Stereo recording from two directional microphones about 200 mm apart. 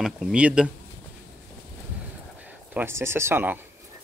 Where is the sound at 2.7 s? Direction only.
10° right (ahead or behind).